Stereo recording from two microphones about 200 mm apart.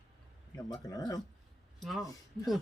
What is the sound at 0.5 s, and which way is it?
Speech, 20° left (ahead or behind).